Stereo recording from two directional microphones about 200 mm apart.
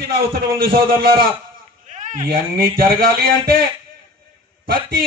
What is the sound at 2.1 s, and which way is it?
A man's voice, 45° right (ahead or behind).